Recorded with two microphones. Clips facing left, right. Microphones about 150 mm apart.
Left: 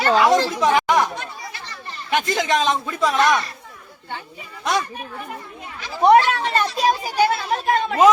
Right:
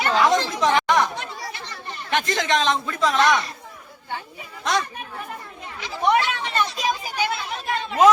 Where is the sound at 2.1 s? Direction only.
5° left (ahead or behind).